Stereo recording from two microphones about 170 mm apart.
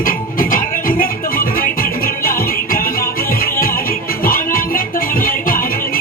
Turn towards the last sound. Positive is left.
turn(degrees=55)  # may be behind; listen again after turning